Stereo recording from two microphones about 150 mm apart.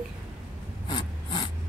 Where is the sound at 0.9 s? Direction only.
30° left (ahead or behind).